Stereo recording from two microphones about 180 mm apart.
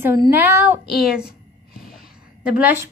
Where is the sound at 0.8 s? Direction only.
Centre (ahead or behind).